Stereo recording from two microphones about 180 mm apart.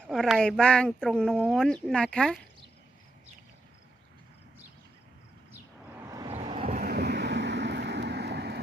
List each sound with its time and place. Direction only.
0.0 s speech: centre (ahead or behind)
6.2 s vehicle: 35° right (ahead or behind)
6.9 s vehicle: 65° right (ahead or behind)